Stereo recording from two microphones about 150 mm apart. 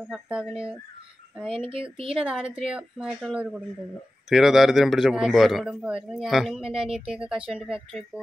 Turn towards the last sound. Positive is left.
turn(degrees=-35)  # may be behind; listen again after turning